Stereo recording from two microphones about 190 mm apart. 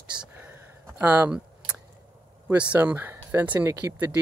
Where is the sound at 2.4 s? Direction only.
5° right (ahead or behind).